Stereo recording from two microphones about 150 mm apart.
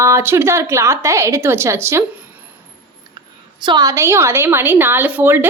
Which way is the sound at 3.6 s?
30° right (ahead or behind).